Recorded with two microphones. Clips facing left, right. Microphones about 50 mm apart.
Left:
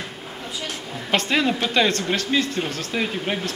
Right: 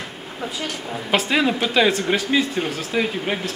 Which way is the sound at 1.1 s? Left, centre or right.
Centre.